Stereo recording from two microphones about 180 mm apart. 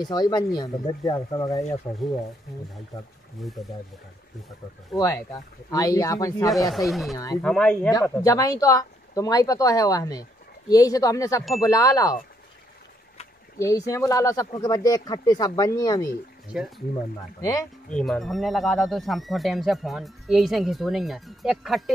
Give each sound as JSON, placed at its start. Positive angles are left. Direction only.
{"t": 0.0, "sound": "speech", "side_deg": 20}
{"t": 3.4, "sound": "speech", "side_deg": 0}
{"t": 4.9, "sound": "speech", "side_deg": 15}
{"t": 6.7, "sound": "speech", "side_deg": 0}
{"t": 7.9, "sound": "speech", "side_deg": 20}
{"t": 13.6, "sound": "speech", "side_deg": 15}
{"t": 16.5, "sound": "speech", "side_deg": -5}
{"t": 17.4, "sound": "speech", "side_deg": 20}
{"t": 17.8, "sound": "speech", "side_deg": 5}